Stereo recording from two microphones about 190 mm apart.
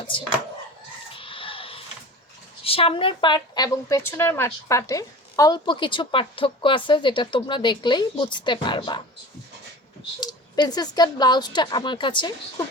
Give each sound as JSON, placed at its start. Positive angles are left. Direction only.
{"t": 1.1, "sound": "a sound", "side_deg": 25}
{"t": 2.6, "sound": "a woman's voice", "side_deg": 30}
{"t": 10.2, "sound": "a woman's voice", "side_deg": 20}